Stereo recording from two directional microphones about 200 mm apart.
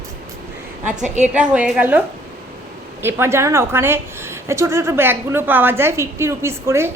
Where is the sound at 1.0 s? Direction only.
35° right (ahead or behind).